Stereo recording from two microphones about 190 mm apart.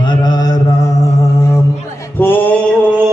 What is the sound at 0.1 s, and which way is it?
Mantra, 20° left (ahead or behind).